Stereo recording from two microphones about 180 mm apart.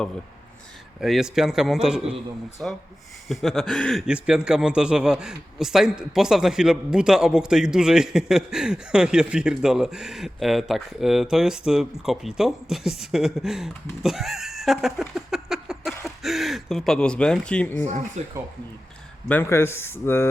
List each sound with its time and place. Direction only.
1.0 s a man's voice: centre (ahead or behind)
18.2 s speech: 40° right (ahead or behind)
19.3 s speech: 10° left (ahead or behind)